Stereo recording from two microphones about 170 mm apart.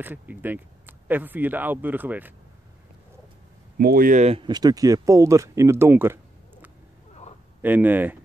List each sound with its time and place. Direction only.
0.0 s speech: 10° right (ahead or behind)
3.7 s speech: 60° right (ahead or behind); by 4.5 s 40° right (ahead or behind)
4.5 s speech: 25° right (ahead or behind)
7.6 s speech: 10° right (ahead or behind)